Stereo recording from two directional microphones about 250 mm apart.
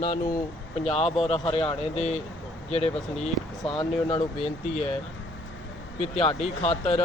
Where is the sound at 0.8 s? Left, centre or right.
Left.